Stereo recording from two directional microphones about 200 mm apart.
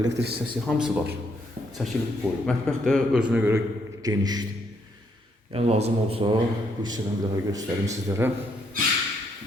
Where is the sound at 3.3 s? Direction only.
10° right (ahead or behind).